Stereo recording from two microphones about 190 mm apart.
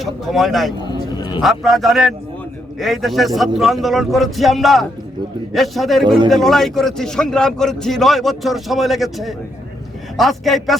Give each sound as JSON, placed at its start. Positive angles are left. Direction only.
{"t": 0.0, "sound": "a man's voice", "side_deg": 0}
{"t": 0.9, "sound": "a sound", "side_deg": 20}
{"t": 1.4, "sound": "a man's voice", "side_deg": 0}